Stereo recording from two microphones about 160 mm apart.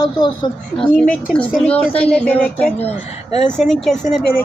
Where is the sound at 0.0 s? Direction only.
25° left (ahead or behind).